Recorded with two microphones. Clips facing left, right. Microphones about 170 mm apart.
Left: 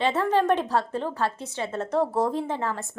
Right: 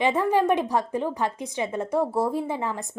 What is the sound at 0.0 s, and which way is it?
A woman's voice, 10° right (ahead or behind).